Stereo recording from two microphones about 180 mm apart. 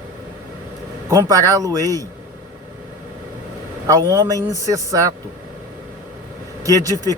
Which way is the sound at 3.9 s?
15° right (ahead or behind).